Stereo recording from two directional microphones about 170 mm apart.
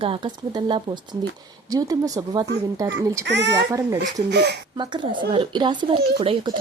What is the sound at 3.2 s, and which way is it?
Speech, 90° right.